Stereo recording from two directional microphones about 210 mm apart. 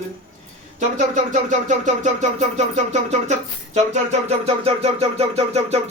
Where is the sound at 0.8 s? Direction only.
35° right (ahead or behind).